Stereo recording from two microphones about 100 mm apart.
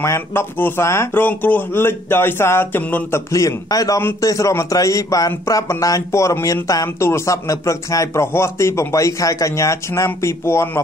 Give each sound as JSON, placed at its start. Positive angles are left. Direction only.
{"t": 0.0, "sound": "speech", "side_deg": 25}